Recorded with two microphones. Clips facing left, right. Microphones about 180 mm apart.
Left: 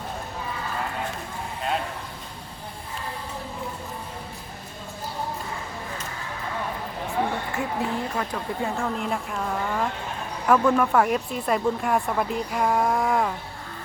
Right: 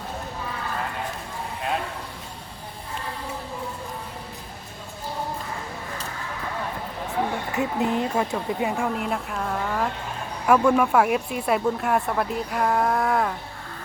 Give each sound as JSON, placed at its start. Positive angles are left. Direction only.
{"t": 7.5, "sound": "speech", "side_deg": -20}
{"t": 9.0, "sound": "speech", "side_deg": 0}